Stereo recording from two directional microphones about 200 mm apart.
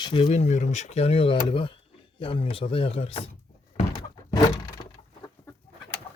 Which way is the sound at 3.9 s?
20° left (ahead or behind).